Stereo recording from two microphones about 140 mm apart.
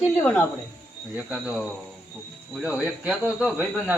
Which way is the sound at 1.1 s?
5° right (ahead or behind).